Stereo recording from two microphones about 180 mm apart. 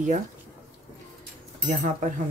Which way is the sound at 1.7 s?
50° right (ahead or behind).